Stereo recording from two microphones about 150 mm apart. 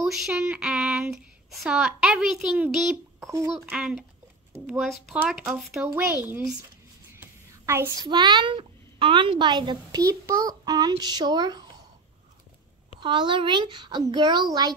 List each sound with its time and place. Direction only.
0.0 s speech: centre (ahead or behind)
3.2 s a child's voice: 20° right (ahead or behind)
3.7 s a child's voice: 5° right (ahead or behind)
7.2 s a sound: 15° right (ahead or behind)
8.1 s a child's voice: 30° right (ahead or behind)
13.0 s a child's voice: 30° right (ahead or behind)